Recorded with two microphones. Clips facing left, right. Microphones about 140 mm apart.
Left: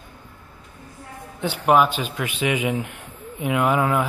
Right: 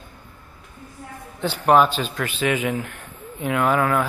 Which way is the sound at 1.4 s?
10° left (ahead or behind).